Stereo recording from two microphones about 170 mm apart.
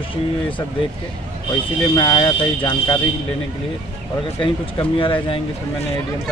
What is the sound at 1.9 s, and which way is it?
Speech, 25° left (ahead or behind).